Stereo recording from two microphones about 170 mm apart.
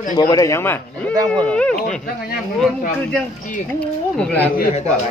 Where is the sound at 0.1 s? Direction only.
20° left (ahead or behind).